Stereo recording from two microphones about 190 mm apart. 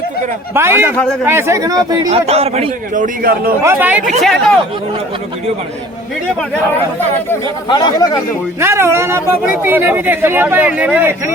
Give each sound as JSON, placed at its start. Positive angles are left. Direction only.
{"t": 0.5, "sound": "a man's voice", "side_deg": -10}
{"t": 2.0, "sound": "a man's voice", "side_deg": -35}
{"t": 3.6, "sound": "a man's voice", "side_deg": -10}
{"t": 4.2, "sound": "speech", "side_deg": 0}
{"t": 7.7, "sound": "speech", "side_deg": 20}
{"t": 8.6, "sound": "a man's voice", "side_deg": -15}